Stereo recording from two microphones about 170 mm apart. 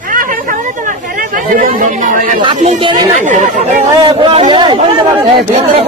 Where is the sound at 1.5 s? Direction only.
50° right (ahead or behind).